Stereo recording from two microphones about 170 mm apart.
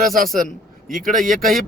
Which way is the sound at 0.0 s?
55° right (ahead or behind).